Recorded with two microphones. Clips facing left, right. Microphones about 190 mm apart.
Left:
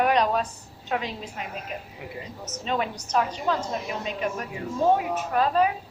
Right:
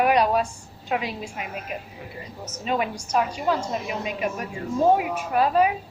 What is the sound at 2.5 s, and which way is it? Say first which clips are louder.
A woman's voice: right 2 dB; 10° right (ahead or behind).